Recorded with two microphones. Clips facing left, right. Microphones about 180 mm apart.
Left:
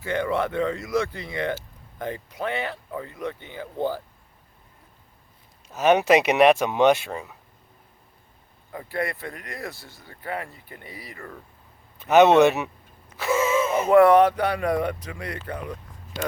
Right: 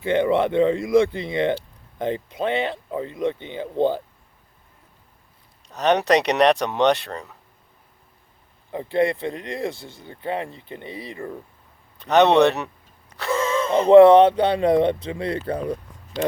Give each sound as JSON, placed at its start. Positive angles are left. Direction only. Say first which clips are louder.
{"t": 0.0, "sound": "speech", "louder": "right 6 dB", "side_deg": -20}
{"t": 5.6, "sound": "speech", "louder": "left 1 dB", "side_deg": 5}
{"t": 8.7, "sound": "speech", "louder": "right 8 dB", "side_deg": -25}
{"t": 11.9, "sound": "speech", "louder": "even", "side_deg": 5}
{"t": 13.1, "sound": "a sound", "louder": "left 1 dB", "side_deg": 5}
{"t": 13.8, "sound": "speech", "louder": "right 6 dB", "side_deg": -25}